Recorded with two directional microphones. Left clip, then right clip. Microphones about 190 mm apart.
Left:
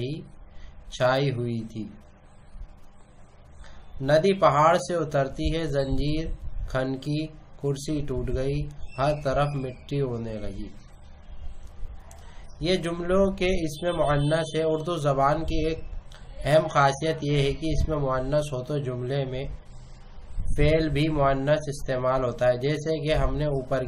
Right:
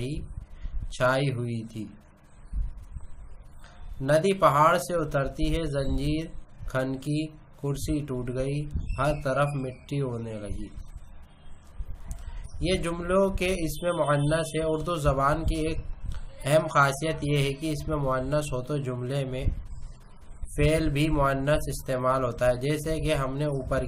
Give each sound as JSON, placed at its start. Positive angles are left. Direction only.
{"t": 0.8, "sound": "speech", "side_deg": -15}
{"t": 4.0, "sound": "speech", "side_deg": -15}
{"t": 12.5, "sound": "speech", "side_deg": -20}
{"t": 20.5, "sound": "speech", "side_deg": -20}